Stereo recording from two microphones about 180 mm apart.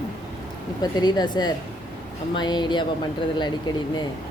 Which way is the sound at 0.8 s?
20° left (ahead or behind).